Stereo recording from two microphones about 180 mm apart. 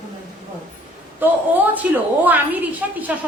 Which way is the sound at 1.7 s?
10° right (ahead or behind).